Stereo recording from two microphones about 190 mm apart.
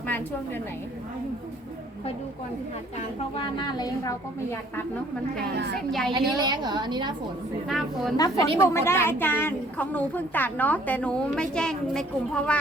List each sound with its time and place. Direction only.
3.3 s a woman's voice: 25° left (ahead or behind)
5.4 s a woman's voice: 55° right (ahead or behind)
6.1 s a woman's voice: 25° right (ahead or behind)
7.7 s a woman's voice: centre (ahead or behind)
8.1 s a woman's voice: 20° left (ahead or behind)